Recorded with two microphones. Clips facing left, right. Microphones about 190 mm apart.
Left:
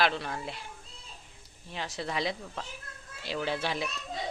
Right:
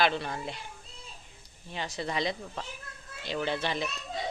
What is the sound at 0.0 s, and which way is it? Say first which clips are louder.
Speech: right 1 dB; centre (ahead or behind).